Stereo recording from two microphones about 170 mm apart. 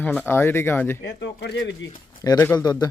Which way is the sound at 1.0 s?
85° left.